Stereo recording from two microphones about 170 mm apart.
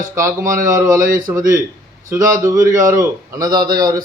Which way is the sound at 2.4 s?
20° right (ahead or behind).